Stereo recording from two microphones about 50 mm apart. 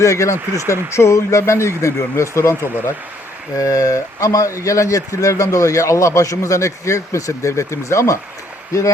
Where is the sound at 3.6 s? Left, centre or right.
Left.